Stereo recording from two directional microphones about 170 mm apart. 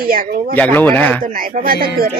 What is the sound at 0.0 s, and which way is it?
Speech, 55° right (ahead or behind).